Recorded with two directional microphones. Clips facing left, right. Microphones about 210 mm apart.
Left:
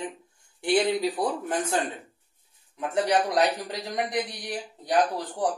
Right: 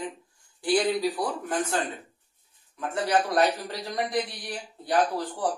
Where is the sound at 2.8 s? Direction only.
15° left (ahead or behind).